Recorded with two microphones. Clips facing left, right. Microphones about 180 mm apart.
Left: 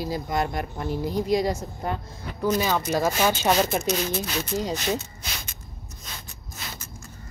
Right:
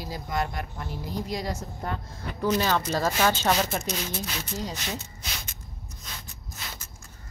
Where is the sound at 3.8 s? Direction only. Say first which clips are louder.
Left 6 dB; 65° left (ahead or behind).